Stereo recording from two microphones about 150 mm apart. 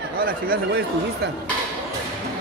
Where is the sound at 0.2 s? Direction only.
80° right.